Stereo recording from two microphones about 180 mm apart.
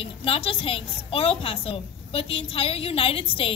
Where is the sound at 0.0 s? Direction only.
30° left (ahead or behind).